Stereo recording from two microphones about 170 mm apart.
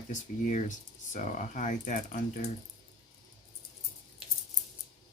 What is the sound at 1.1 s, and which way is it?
Speech, 45° left (ahead or behind).